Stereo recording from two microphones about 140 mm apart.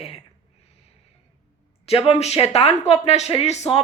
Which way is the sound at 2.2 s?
50° left (ahead or behind).